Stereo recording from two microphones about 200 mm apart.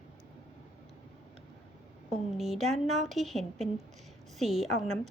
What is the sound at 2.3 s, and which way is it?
A woman's voice, centre (ahead or behind).